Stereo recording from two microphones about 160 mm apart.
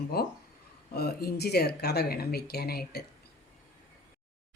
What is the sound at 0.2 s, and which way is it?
Speech, 80° left.